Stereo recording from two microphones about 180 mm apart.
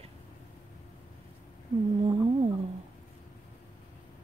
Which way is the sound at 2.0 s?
30° right (ahead or behind).